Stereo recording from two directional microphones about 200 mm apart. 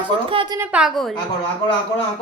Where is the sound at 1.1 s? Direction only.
25° left (ahead or behind).